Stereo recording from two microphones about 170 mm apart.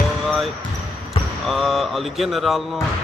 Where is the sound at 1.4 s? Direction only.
Centre (ahead or behind).